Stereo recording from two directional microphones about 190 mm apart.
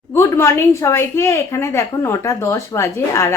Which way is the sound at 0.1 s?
15° left (ahead or behind).